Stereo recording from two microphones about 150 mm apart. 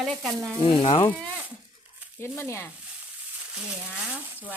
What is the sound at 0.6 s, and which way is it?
Speech, 35° left (ahead or behind).